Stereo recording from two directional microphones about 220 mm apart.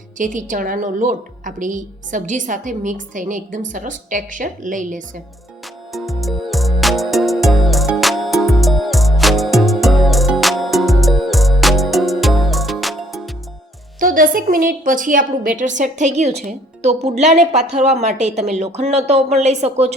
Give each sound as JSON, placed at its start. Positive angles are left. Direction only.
{"t": 0.2, "sound": "a woman's voice", "side_deg": -35}
{"t": 5.9, "sound": "music", "side_deg": 0}
{"t": 14.0, "sound": "a woman's voice", "side_deg": -40}